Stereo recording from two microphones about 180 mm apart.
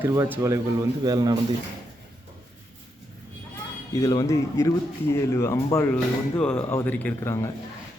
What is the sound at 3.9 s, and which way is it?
Speech, 20° left (ahead or behind).